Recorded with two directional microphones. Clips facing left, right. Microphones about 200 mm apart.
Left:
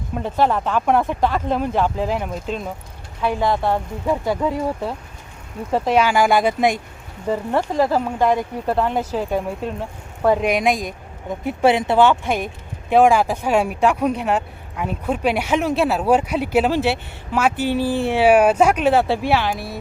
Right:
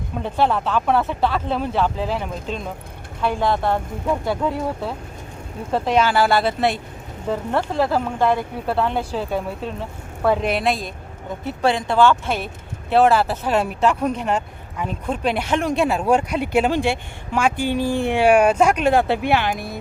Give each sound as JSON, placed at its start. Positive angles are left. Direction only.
{"t": 0.2, "sound": "speech", "side_deg": 10}